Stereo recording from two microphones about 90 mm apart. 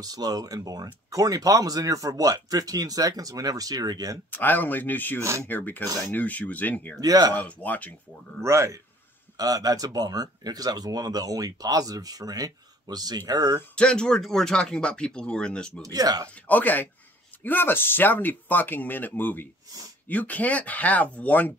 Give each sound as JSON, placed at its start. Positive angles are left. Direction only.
{"t": 0.0, "sound": "speech", "side_deg": -45}
{"t": 4.3, "sound": "speech", "side_deg": 20}
{"t": 5.2, "sound": "speech", "side_deg": -30}
{"t": 5.5, "sound": "speech", "side_deg": 20}
{"t": 7.0, "sound": "speech", "side_deg": -45}
{"t": 7.3, "sound": "speech", "side_deg": 15}
{"t": 8.4, "sound": "speech", "side_deg": -30}
{"t": 9.4, "sound": "speech", "side_deg": -45}
{"t": 13.7, "sound": "speech", "side_deg": 10}
{"t": 15.8, "sound": "speech", "side_deg": -45}
{"t": 16.4, "sound": "speech", "side_deg": 20}